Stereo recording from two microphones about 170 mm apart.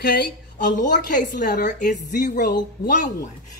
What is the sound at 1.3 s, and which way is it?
Speech, 85° left.